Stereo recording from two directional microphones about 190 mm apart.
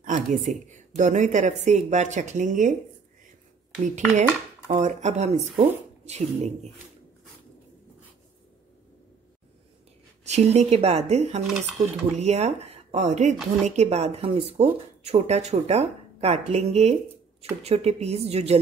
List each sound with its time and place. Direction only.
0.0 s a woman's voice: 40° right (ahead or behind)
4.6 s a woman's voice: 40° right (ahead or behind)
10.2 s a woman's voice: 35° right (ahead or behind)